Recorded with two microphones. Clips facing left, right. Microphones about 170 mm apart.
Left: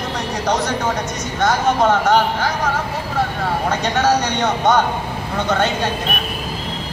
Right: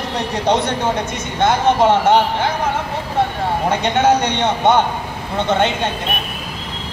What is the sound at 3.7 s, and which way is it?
Speech, 25° right (ahead or behind).